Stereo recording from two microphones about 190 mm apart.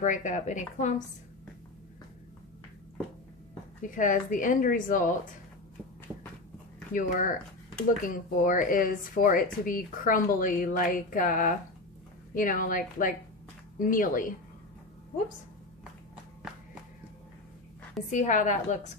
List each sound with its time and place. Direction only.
0.0 s a woman's voice: 40° left (ahead or behind)
3.8 s speech: 45° left (ahead or behind)
6.9 s speech: 45° left (ahead or behind)
18.1 s a woman's voice: 40° left (ahead or behind)